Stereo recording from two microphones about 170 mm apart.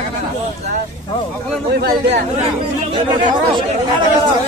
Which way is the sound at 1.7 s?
70° right (ahead or behind).